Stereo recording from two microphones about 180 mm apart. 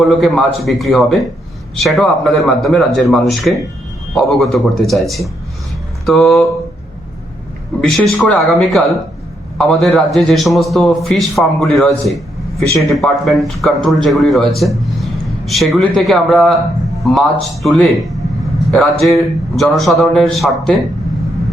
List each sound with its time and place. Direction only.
0.0 s a man's voice: centre (ahead or behind)
7.8 s a man's voice: centre (ahead or behind)